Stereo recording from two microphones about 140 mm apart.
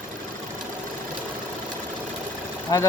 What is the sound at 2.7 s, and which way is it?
Speech, 25° left (ahead or behind).